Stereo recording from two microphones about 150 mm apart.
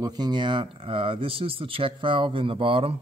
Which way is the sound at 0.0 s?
25° right (ahead or behind).